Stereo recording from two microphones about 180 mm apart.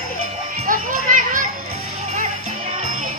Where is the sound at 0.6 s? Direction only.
45° right (ahead or behind).